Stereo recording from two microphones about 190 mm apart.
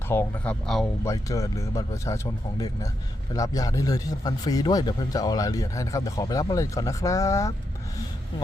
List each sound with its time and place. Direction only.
0.1 s speech: 10° left (ahead or behind)